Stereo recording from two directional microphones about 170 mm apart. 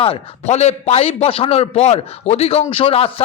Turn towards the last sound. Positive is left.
turn(degrees=35)  # may be behind; listen again after turning